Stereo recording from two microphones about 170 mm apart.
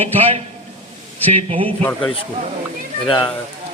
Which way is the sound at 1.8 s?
10° left (ahead or behind).